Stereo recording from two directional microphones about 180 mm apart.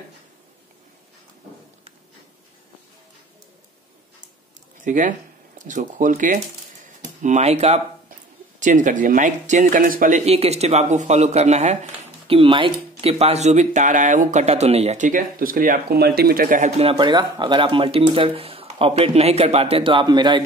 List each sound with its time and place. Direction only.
4.8 s speech: 45° right (ahead or behind); by 20.4 s 25° right (ahead or behind)